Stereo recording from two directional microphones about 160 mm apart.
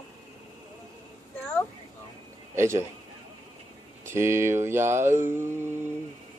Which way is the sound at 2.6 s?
15° right (ahead or behind).